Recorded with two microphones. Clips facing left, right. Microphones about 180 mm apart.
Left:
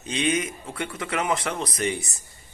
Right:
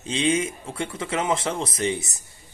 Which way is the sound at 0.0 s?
30° right (ahead or behind).